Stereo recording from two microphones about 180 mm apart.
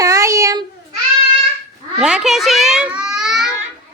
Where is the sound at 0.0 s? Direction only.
15° right (ahead or behind).